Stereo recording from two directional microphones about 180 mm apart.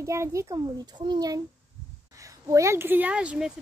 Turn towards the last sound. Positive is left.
turn(degrees=-5)  # may be behind; listen again after turning